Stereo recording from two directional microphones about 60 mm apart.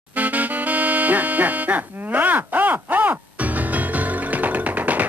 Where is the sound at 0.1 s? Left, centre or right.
Right.